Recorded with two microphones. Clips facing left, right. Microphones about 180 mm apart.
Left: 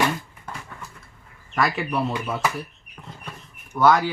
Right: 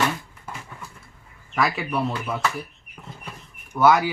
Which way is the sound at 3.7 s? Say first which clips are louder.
Even; 10° right (ahead or behind).